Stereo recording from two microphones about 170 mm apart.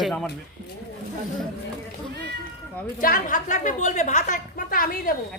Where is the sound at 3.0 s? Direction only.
55° left (ahead or behind).